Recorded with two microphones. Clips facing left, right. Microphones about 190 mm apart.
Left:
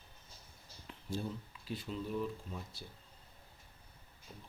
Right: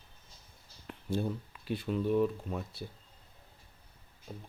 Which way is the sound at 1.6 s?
60° right (ahead or behind).